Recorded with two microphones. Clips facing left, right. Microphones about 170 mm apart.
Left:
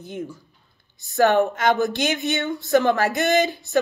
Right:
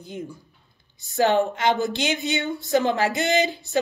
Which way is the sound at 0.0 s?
55° left (ahead or behind).